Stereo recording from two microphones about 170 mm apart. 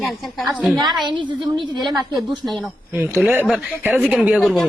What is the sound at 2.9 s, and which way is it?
Speech, 10° right (ahead or behind).